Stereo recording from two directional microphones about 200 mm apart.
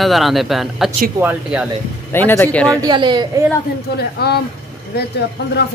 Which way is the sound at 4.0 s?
55° left (ahead or behind).